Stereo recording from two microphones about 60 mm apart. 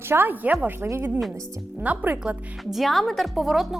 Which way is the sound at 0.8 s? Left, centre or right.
Right.